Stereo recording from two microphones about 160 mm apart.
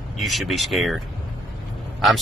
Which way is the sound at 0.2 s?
Centre (ahead or behind).